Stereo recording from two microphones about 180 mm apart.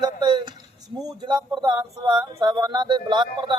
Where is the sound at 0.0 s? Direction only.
25° right (ahead or behind).